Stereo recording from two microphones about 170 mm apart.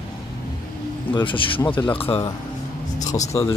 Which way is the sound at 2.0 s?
20° left (ahead or behind).